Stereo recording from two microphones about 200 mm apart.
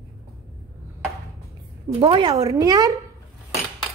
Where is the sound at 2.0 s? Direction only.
25° right (ahead or behind).